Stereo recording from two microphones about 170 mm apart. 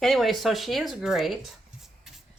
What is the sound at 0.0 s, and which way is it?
Speech, centre (ahead or behind).